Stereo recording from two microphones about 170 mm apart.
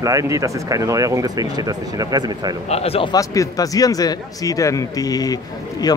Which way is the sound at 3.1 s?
20° left (ahead or behind).